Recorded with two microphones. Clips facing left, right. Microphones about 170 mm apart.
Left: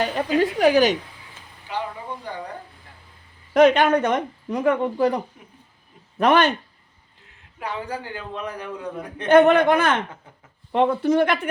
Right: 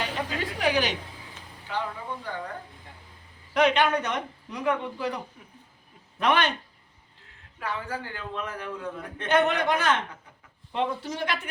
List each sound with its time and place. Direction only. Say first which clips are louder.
0.3 s a woman's voice: left 10 dB; 45° left (ahead or behind)
1.7 s vehicle: left 2 dB; 15° left (ahead or behind)
2.1 s speech: left 2 dB; 15° left (ahead or behind)
3.5 s a woman's voice: left 7 dB; 45° left (ahead or behind)
7.6 s a man's voice: left 3 dB; 20° left (ahead or behind)
9.3 s a woman's voice: left 9 dB; 50° left (ahead or behind)